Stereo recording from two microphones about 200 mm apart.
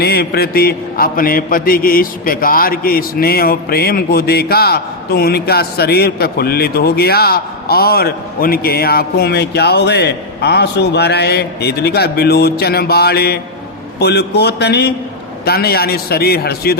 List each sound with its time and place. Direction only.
0.0 s mantra: 50° left (ahead or behind)
14.0 s a man's voice: 55° left (ahead or behind)
15.4 s mantra: 50° left (ahead or behind)